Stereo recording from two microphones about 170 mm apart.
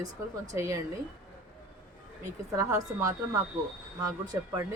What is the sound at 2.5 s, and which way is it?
Speech, 20° right (ahead or behind).